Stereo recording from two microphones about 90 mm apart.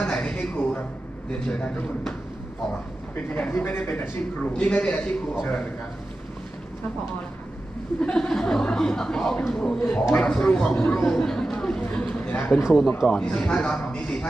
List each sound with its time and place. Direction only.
0.0 s a sound: 10° left (ahead or behind)
1.3 s speech: 10° left (ahead or behind)
3.2 s a man's voice: 15° left (ahead or behind)
4.5 s speech: 10° left (ahead or behind)
8.0 s speech: 10° left (ahead or behind)